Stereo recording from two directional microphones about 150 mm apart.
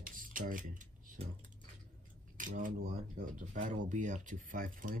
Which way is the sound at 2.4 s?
60° right (ahead or behind).